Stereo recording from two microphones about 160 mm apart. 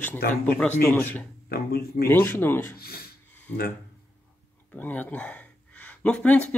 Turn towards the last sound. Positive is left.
turn(degrees=10)  # may be behind; listen again after turning